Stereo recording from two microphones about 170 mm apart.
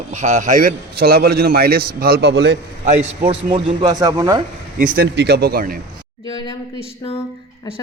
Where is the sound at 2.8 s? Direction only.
45° right (ahead or behind).